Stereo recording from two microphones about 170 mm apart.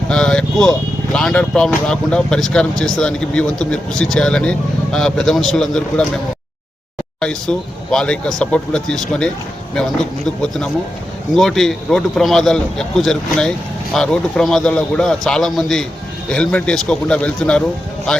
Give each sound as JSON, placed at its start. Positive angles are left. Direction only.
{"t": 0.1, "sound": "speech", "side_deg": 5}
{"t": 7.2, "sound": "speech", "side_deg": 5}